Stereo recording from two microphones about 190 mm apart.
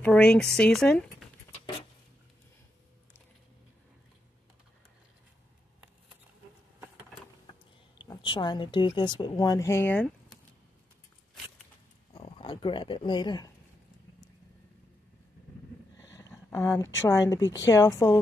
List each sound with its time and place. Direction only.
0.0 s speech: 5° left (ahead or behind)
8.0 s a woman's voice: 25° left (ahead or behind)
12.1 s speech: 30° left (ahead or behind)
16.2 s a sound: 15° left (ahead or behind)
17.1 s speech: 15° left (ahead or behind)